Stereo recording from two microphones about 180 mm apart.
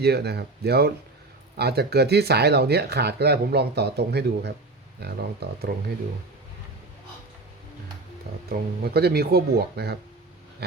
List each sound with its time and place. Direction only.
0.0 s speech: 65° right (ahead or behind)
8.4 s speech: 60° right (ahead or behind)